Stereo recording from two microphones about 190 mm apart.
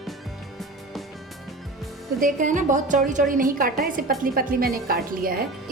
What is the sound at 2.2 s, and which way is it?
A woman's voice, 40° right (ahead or behind).